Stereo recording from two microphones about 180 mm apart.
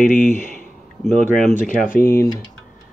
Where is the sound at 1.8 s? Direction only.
55° left (ahead or behind).